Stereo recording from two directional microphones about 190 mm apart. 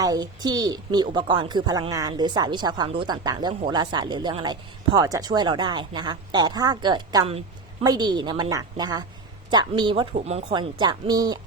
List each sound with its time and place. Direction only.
0.0 s a woman's voice: 20° right (ahead or behind)